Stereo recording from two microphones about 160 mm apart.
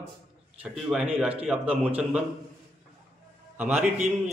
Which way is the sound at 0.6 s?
5° right (ahead or behind).